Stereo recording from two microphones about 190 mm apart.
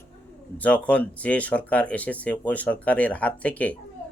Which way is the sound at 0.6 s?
5° left (ahead or behind).